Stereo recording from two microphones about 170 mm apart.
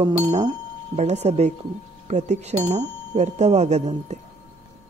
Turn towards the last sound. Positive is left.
turn(degrees=-40)  # may be behind; listen again after turning